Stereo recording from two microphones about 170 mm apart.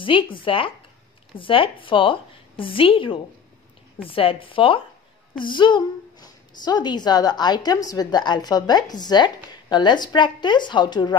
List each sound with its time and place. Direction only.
0.0 s a woman's voice: 30° left (ahead or behind)